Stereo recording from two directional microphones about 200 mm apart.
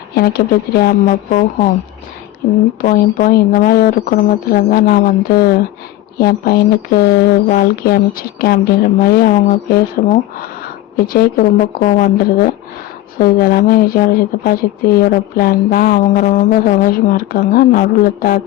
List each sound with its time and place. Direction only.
0.2 s speech: 50° left (ahead or behind)
2.8 s speech: 45° left (ahead or behind)